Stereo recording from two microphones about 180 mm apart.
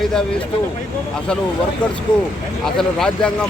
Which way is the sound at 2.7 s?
5° left (ahead or behind).